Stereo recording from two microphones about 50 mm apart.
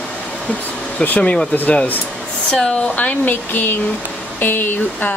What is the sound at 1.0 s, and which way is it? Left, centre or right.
Speech, left.